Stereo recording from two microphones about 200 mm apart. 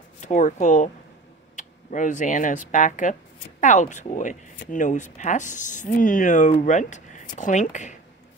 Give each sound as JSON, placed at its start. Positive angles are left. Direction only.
{"t": 0.2, "sound": "speech", "side_deg": 40}